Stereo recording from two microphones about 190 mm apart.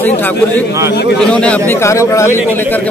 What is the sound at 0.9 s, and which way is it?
Speech, 60° left (ahead or behind).